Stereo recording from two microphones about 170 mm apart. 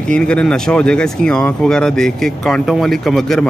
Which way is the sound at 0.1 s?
5° left (ahead or behind).